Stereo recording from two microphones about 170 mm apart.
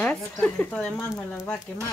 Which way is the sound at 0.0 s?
10° left (ahead or behind).